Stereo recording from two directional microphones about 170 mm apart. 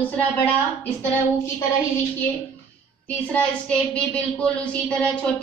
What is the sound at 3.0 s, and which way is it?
A man's voice, 10° left (ahead or behind).